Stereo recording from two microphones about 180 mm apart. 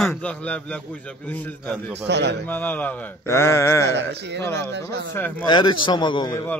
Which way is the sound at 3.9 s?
70° right (ahead or behind).